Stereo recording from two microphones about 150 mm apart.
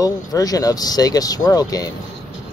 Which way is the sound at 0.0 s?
25° left (ahead or behind).